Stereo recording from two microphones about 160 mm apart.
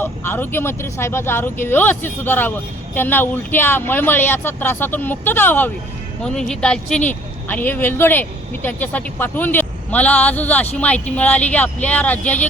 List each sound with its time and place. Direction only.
0.0 s a woman's voice: 15° left (ahead or behind)